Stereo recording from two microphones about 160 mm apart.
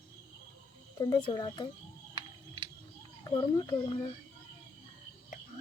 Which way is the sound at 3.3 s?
20° left (ahead or behind).